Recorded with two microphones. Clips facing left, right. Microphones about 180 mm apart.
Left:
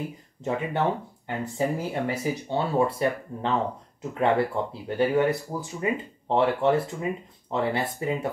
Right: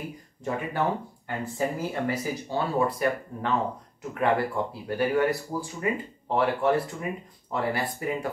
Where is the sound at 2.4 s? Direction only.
25° left (ahead or behind).